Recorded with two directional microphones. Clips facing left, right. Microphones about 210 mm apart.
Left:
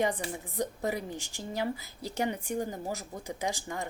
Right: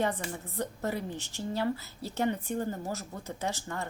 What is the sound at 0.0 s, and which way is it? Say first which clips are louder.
Speech: left 1 dB; 15° left (ahead or behind).